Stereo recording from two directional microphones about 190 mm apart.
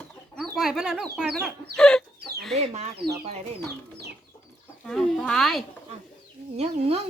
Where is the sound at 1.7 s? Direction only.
5° left (ahead or behind).